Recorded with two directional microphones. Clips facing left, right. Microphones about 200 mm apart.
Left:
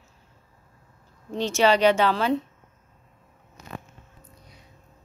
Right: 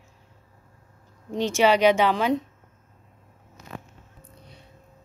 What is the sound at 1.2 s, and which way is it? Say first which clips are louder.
Speech: right 1 dB; 15° right (ahead or behind).